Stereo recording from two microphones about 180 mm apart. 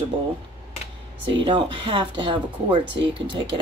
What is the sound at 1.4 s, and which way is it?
Speech, 25° right (ahead or behind).